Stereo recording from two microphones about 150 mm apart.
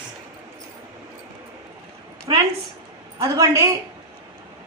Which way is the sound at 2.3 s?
30° right (ahead or behind).